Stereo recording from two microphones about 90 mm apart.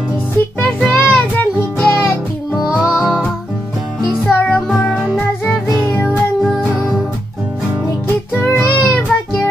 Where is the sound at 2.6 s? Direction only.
10° right (ahead or behind).